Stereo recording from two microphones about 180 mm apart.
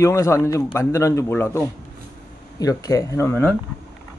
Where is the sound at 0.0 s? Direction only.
15° left (ahead or behind).